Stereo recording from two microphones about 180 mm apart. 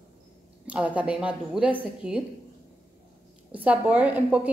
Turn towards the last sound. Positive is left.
turn(degrees=-5)  # may be behind; listen again after turning